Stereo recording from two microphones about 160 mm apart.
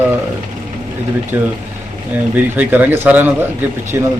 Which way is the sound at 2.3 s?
10° right (ahead or behind).